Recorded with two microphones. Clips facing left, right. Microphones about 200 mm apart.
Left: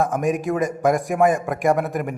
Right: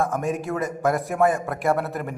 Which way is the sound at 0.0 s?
15° left (ahead or behind).